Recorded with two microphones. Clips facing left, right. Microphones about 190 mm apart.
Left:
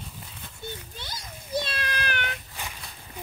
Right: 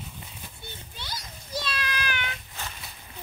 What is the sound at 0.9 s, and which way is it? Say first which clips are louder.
Cat: even; 50° left (ahead or behind).